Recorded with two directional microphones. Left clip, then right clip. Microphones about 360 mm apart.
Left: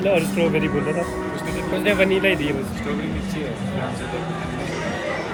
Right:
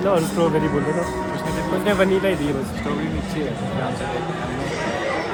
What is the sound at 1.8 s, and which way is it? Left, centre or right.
Speech, right.